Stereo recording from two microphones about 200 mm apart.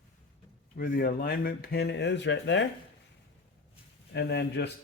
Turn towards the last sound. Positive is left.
turn(degrees=55)  # may be behind; listen again after turning